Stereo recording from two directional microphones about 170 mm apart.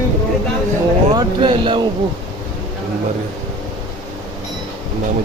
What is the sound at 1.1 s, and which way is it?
Speech, 30° right (ahead or behind).